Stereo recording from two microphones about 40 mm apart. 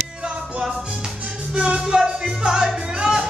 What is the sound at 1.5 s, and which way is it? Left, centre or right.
Music, centre.